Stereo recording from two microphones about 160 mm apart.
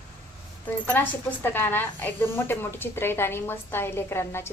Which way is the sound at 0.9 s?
10° left (ahead or behind).